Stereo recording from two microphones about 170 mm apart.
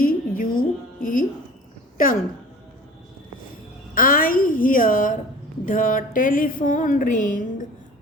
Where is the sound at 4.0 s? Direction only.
55° left (ahead or behind).